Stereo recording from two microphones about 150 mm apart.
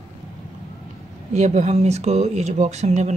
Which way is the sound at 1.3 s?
50° right (ahead or behind).